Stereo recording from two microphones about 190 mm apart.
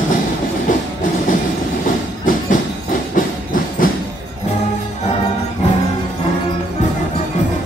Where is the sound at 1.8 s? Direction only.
45° left (ahead or behind).